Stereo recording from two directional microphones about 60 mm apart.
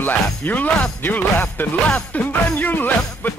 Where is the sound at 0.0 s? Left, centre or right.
Left.